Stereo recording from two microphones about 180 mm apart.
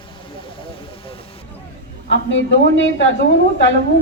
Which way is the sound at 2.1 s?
90° left.